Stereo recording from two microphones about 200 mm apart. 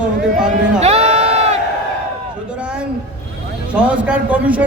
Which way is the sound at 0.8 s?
30° right (ahead or behind).